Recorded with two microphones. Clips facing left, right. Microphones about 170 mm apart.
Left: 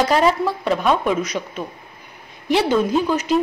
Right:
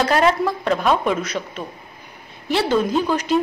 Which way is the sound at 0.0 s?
10° left (ahead or behind).